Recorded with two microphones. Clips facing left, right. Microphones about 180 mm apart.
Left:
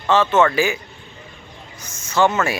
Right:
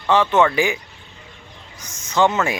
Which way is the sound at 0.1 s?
15° right (ahead or behind).